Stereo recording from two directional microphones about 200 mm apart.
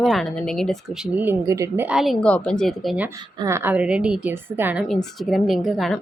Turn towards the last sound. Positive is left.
turn(degrees=0)  # may be behind; listen again after turning